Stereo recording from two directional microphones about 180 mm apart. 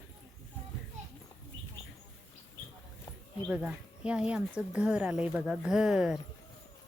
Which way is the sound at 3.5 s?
5° right (ahead or behind).